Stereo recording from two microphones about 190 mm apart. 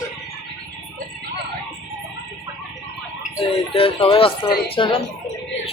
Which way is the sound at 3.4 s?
30° left (ahead or behind).